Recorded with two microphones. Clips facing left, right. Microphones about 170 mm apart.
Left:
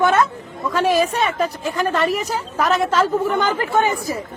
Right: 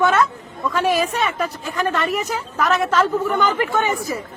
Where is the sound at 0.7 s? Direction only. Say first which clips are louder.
Left 2 dB; 35° left (ahead or behind).